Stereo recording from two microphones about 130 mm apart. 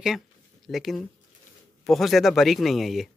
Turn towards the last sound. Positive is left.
turn(degrees=0)  # may be behind; listen again after turning